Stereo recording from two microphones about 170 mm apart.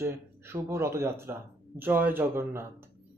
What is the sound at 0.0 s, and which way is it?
A man's voice, 15° right (ahead or behind).